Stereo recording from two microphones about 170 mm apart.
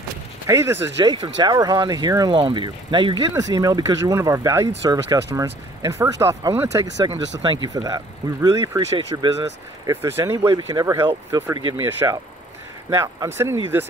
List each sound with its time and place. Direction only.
0.5 s speech: 15° right (ahead or behind)
1.0 s speech: 30° right (ahead or behind)